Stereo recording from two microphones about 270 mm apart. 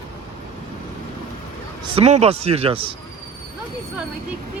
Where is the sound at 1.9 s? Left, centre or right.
Right.